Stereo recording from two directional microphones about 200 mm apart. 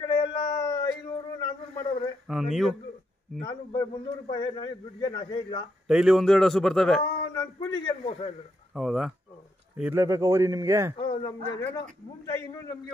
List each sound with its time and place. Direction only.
0.0 s a sound: 20° left (ahead or behind)
2.3 s speech: 5° right (ahead or behind)
3.3 s a man's voice: 20° left (ahead or behind)
5.9 s a man's voice: 5° right (ahead or behind)
7.3 s a man's voice: 25° left (ahead or behind)
8.7 s a man's voice: centre (ahead or behind)
11.0 s a man's voice: 20° left (ahead or behind)